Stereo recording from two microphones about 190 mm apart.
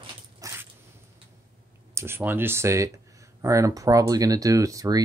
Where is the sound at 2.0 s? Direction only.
10° right (ahead or behind).